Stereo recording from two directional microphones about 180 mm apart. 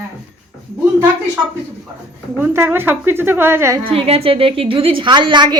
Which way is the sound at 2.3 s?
15° right (ahead or behind).